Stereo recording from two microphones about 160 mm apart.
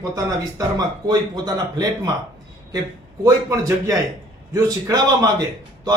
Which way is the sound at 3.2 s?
20° right (ahead or behind).